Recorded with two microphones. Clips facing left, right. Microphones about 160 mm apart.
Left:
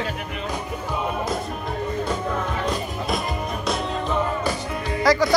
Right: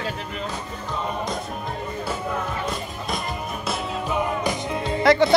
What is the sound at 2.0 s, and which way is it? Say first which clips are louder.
Music: left 2 dB; 5° right (ahead or behind).